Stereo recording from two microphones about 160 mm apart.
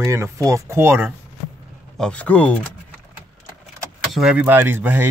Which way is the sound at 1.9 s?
5° left (ahead or behind).